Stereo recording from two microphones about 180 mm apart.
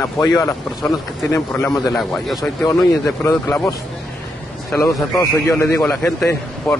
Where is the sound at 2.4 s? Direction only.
15° left (ahead or behind).